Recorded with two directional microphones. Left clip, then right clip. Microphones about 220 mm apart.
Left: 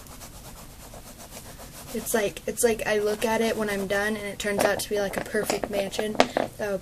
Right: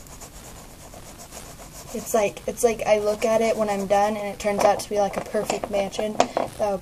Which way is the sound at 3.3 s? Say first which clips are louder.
Right 5 dB; 15° left (ahead or behind).